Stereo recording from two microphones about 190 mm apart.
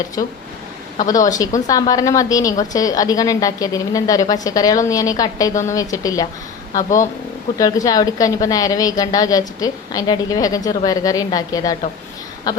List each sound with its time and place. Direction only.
0.2 s a woman's voice: 20° left (ahead or behind)
7.6 s a woman's voice: 20° left (ahead or behind)